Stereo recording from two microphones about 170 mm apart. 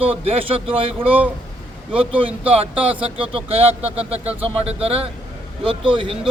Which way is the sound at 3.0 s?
35° right (ahead or behind).